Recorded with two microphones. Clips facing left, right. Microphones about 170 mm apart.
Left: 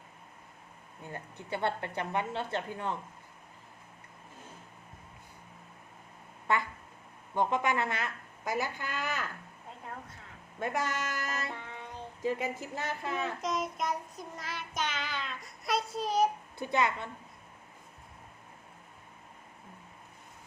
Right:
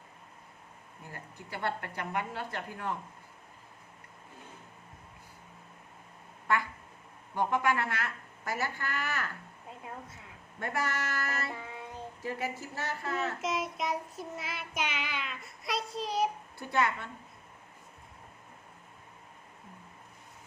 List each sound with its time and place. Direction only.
1.0 s a woman's voice: 25° left (ahead or behind)
7.3 s a woman's voice: 20° left (ahead or behind)
10.6 s a woman's voice: 20° left (ahead or behind)
11.5 s child singing: 10° right (ahead or behind)
12.2 s speech: 15° left (ahead or behind)
13.4 s child singing: centre (ahead or behind)
15.3 s speech: centre (ahead or behind)
16.6 s a woman's voice: 20° left (ahead or behind)